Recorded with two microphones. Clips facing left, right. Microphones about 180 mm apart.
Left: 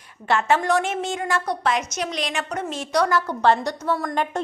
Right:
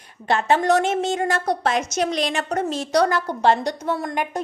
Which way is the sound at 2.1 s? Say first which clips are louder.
Right 4 dB; 40° right (ahead or behind).